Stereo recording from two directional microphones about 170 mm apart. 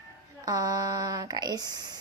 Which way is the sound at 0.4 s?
20° right (ahead or behind).